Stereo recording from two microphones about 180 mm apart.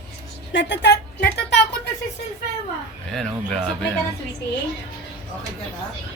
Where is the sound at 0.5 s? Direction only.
75° left (ahead or behind).